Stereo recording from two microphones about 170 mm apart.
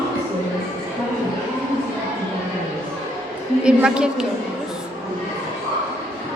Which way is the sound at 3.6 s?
5° right (ahead or behind).